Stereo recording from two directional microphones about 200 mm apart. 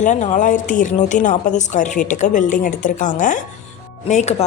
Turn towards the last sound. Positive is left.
turn(degrees=35)  # may be behind; listen again after turning